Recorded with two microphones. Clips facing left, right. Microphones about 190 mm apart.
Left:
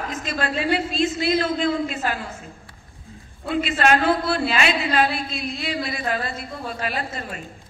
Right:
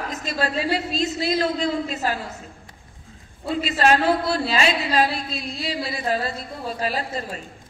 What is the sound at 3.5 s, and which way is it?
A woman's voice, 40° right (ahead or behind).